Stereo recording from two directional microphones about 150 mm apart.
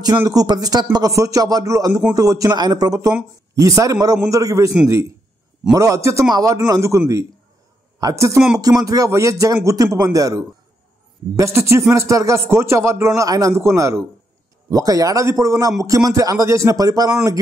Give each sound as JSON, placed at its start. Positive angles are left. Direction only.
{"t": 0.2, "sound": "a man's voice", "side_deg": -25}